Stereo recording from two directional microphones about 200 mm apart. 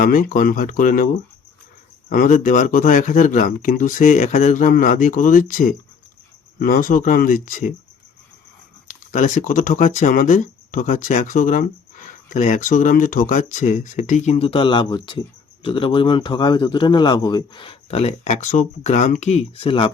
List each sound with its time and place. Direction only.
0.0 s a man's voice: 45° left (ahead or behind)
8.9 s a man's voice: 40° left (ahead or behind)